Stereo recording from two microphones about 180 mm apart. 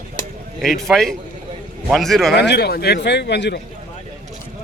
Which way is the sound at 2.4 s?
65° left (ahead or behind).